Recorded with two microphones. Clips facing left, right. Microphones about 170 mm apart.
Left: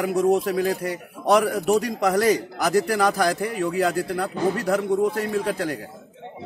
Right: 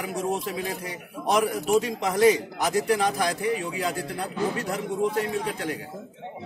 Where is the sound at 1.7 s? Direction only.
40° left (ahead or behind).